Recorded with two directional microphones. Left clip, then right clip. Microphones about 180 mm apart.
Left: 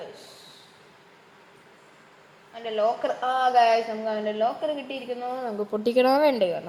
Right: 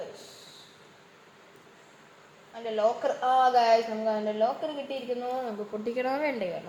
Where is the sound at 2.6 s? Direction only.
30° left (ahead or behind).